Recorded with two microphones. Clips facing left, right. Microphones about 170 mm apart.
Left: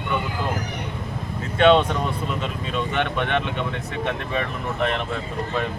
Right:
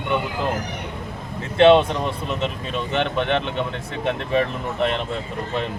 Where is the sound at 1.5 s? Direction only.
25° right (ahead or behind).